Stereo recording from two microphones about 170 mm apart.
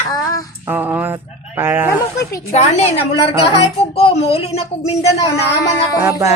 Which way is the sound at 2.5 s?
40° left (ahead or behind).